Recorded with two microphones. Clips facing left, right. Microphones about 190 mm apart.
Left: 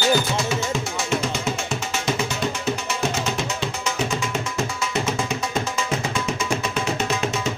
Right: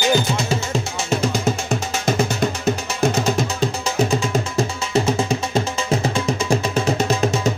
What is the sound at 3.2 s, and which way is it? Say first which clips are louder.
Music: right 6 dB; 35° right (ahead or behind).